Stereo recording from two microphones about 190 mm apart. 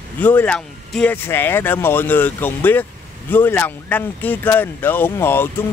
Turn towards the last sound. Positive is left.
turn(degrees=10)  # may be behind; listen again after turning